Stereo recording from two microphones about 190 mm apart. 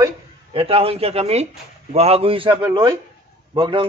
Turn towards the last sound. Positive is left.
turn(degrees=-25)  # may be behind; listen again after turning